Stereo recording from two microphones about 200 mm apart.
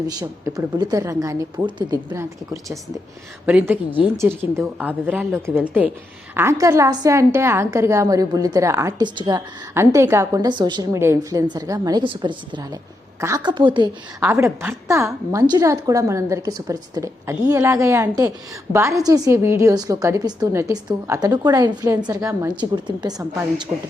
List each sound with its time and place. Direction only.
0.1 s a woman's voice: 20° right (ahead or behind)
14.2 s a woman's voice: 10° right (ahead or behind)